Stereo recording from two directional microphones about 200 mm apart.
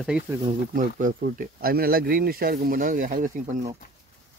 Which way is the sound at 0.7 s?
40° right (ahead or behind).